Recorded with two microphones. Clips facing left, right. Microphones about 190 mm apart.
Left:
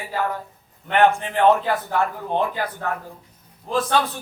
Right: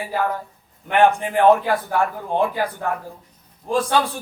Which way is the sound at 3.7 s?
10° right (ahead or behind).